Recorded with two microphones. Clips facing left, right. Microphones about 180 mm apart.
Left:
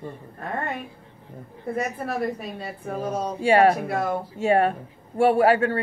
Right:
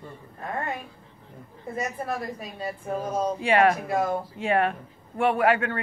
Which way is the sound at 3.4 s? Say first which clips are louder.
Left 4 dB; 30° left (ahead or behind).